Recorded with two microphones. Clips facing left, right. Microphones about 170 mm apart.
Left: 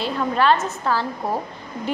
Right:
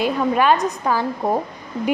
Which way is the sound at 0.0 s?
15° right (ahead or behind).